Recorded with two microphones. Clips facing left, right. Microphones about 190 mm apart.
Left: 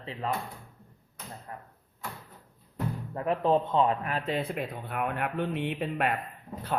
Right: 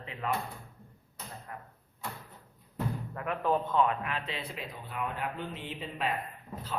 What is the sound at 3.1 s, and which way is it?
A man's voice, 30° left (ahead or behind).